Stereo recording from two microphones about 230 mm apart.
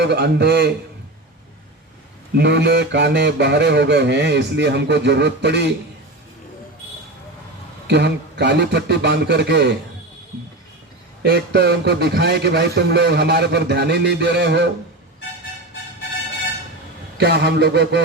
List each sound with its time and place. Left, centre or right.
0.0 s a man's voice: right
2.3 s a man's voice: right
7.9 s a man's voice: right
11.2 s a man's voice: right
17.2 s a man's voice: right